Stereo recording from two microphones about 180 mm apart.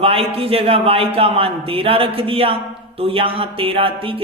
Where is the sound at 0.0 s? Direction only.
30° right (ahead or behind).